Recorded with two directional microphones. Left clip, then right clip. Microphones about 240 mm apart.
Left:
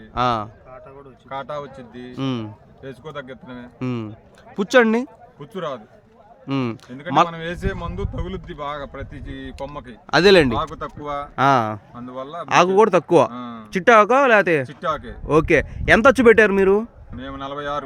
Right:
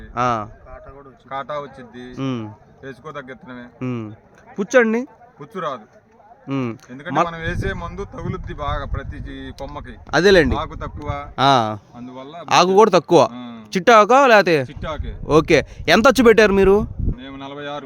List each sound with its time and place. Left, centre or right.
0.1 s a man's voice: centre
1.3 s speech: centre
2.1 s speech: centre
3.1 s speech: centre
9.3 s speech: left
10.1 s speech: centre
11.3 s speech: centre
12.0 s speech: centre
12.5 s speech: centre
13.3 s speech: centre
13.7 s speech: centre
14.7 s speech: centre
15.3 s speech: centre
17.2 s speech: centre